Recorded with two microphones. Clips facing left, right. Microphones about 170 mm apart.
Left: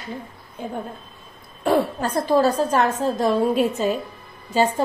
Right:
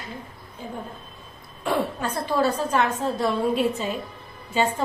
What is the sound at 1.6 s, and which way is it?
A woman's voice, 35° left (ahead or behind).